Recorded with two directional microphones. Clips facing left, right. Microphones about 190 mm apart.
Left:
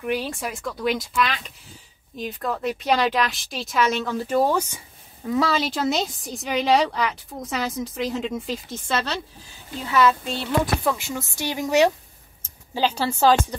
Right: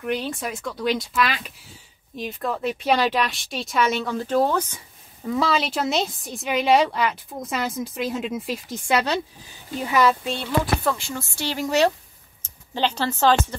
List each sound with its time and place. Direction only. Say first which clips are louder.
0.0 s a woman's voice: even; 5° left (ahead or behind); by 10.1 s 15° right (ahead or behind)
10.8 s a woman's voice: even; 5° left (ahead or behind)
11.1 s speech: left 1 dB; 20° left (ahead or behind)